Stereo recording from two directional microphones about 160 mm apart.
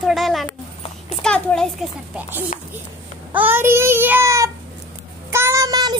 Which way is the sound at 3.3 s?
15° right (ahead or behind).